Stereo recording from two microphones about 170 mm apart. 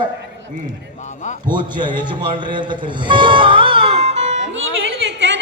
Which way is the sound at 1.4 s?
25° right (ahead or behind).